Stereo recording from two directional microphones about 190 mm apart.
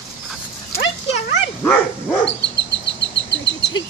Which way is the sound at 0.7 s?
55° left (ahead or behind).